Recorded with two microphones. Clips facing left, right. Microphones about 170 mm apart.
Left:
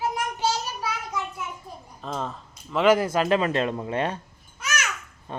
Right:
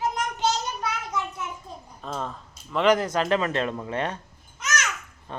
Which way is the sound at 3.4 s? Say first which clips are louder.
Left 2 dB; 20° left (ahead or behind).